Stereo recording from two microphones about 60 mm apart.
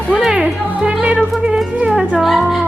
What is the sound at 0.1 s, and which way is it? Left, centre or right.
Music, centre.